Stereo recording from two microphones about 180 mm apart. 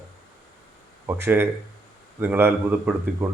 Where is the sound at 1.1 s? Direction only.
15° right (ahead or behind).